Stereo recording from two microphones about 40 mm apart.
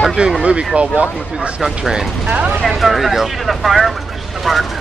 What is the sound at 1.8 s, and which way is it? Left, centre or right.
Speech, centre.